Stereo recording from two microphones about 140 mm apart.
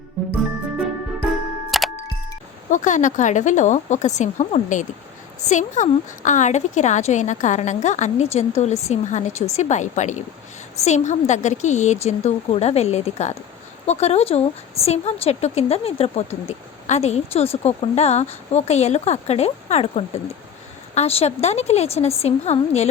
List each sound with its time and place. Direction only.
1.7 s music: centre (ahead or behind)
2.6 s a woman's voice: 65° left (ahead or behind)